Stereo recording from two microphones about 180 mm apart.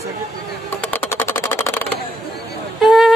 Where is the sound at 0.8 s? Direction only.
10° left (ahead or behind).